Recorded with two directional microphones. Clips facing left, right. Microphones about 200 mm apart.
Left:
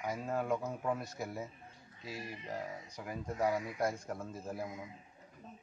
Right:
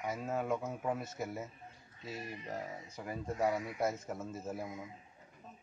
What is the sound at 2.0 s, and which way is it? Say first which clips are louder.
Speech: right 1 dB; 10° left (ahead or behind).